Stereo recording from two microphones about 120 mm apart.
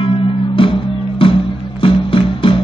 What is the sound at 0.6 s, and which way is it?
Music, 45° left (ahead or behind).